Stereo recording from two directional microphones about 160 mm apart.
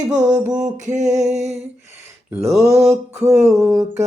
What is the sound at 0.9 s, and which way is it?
Music, 45° right (ahead or behind).